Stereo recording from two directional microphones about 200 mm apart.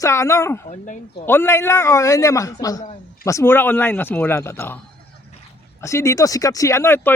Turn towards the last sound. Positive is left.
turn(degrees=10)  # may be behind; listen again after turning